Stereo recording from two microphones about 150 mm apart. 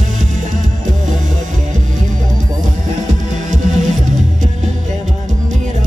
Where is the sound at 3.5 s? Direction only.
55° right (ahead or behind).